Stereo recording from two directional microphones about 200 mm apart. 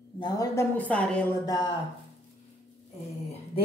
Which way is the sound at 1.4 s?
20° left (ahead or behind).